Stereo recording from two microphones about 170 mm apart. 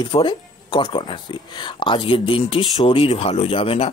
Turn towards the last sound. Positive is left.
turn(degrees=35)  # may be behind; listen again after turning